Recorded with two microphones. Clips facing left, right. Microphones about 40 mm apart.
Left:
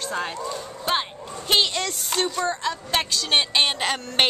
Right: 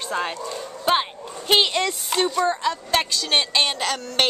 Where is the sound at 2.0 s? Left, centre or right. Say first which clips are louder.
Right 2 dB; centre.